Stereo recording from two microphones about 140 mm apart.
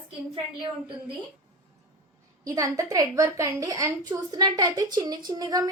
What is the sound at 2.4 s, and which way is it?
A woman's voice, 25° right (ahead or behind).